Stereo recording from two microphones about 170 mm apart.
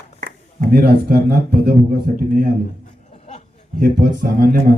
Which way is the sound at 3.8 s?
55° right (ahead or behind).